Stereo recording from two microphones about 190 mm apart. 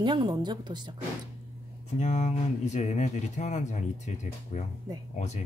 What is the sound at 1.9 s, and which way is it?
Speech, 40° left (ahead or behind).